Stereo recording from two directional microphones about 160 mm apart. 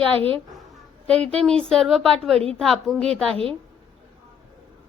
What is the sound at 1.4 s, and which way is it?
A woman's voice, 5° left (ahead or behind).